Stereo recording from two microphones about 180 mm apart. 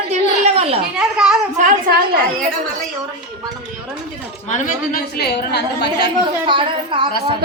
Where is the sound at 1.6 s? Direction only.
50° right (ahead or behind).